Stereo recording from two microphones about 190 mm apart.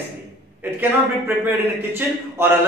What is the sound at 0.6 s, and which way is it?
A man's voice, 10° right (ahead or behind).